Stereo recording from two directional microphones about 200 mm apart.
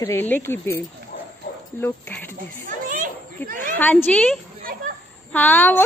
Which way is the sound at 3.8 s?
10° left (ahead or behind).